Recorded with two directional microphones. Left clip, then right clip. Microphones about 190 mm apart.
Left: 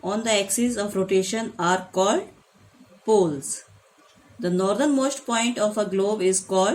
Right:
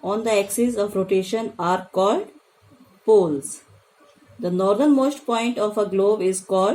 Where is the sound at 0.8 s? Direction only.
40° left (ahead or behind).